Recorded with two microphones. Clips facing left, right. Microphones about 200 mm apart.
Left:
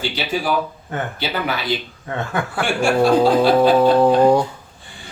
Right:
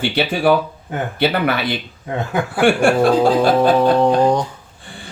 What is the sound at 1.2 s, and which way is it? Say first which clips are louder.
Speech: right 9 dB; 60° right (ahead or behind).